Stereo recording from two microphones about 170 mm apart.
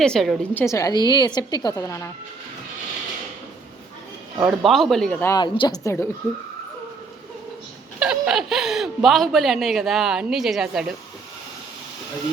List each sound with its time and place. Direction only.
0.0 s speech: 5° left (ahead or behind)
0.6 s a woman's voice: 20° left (ahead or behind)
4.4 s speech: centre (ahead or behind)
5.2 s a woman's voice: 20° left (ahead or behind)
7.9 s speech: 5° right (ahead or behind)